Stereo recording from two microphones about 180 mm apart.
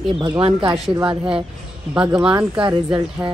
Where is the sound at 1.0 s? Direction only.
5° right (ahead or behind).